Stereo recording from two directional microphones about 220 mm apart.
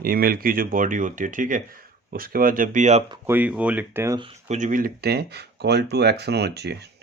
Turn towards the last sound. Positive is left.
turn(degrees=-50)  # may be behind; listen again after turning